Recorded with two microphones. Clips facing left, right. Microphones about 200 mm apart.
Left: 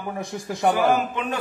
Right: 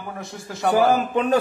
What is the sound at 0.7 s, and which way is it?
Speech, 35° right (ahead or behind).